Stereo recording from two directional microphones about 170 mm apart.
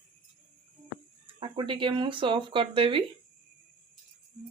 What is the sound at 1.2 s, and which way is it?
Speech, 30° right (ahead or behind).